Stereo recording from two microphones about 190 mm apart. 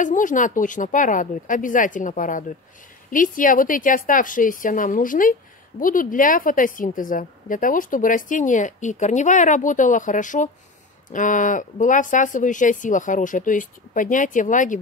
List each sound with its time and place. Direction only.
0.0 s a woman's voice: 40° left (ahead or behind)